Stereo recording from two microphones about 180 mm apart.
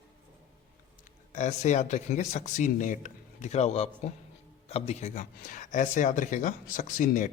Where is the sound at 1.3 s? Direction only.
40° left (ahead or behind).